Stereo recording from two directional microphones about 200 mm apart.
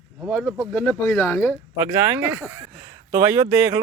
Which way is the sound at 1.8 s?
10° right (ahead or behind).